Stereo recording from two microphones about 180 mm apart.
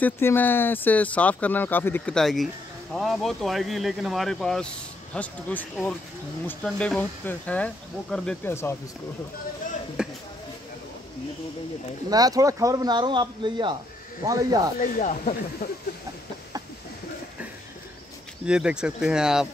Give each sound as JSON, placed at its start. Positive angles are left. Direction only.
{"t": 0.0, "sound": "speech", "side_deg": 10}
{"t": 10.0, "sound": "a sound", "side_deg": -5}
{"t": 12.1, "sound": "a man's voice", "side_deg": -20}
{"t": 14.8, "sound": "speech", "side_deg": 45}
{"t": 18.4, "sound": "speech", "side_deg": -5}